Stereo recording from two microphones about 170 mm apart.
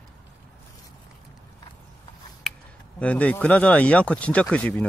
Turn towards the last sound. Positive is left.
turn(degrees=5)  # may be behind; listen again after turning